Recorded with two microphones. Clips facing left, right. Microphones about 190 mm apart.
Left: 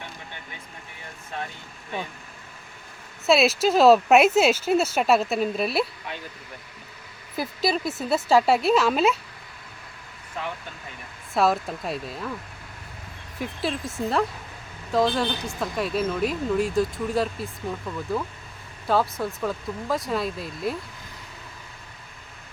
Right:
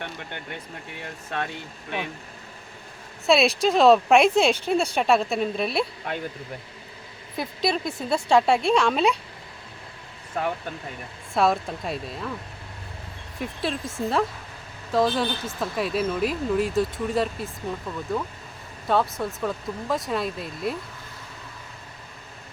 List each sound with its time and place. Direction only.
1.3 s speech: 75° right (ahead or behind)
3.2 s speech: centre (ahead or behind)
7.3 s speech: centre (ahead or behind)
10.4 s speech: 45° right (ahead or behind)
11.3 s speech: centre (ahead or behind)
13.4 s speech: centre (ahead or behind)